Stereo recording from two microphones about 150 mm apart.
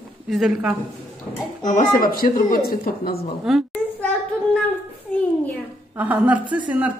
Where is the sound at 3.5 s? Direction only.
Centre (ahead or behind).